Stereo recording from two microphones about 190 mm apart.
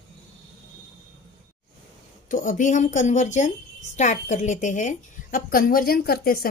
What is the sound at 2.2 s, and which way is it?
A woman's voice, 45° left (ahead or behind).